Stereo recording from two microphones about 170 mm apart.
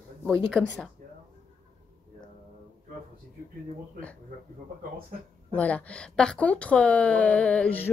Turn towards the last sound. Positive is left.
turn(degrees=10)  # may be behind; listen again after turning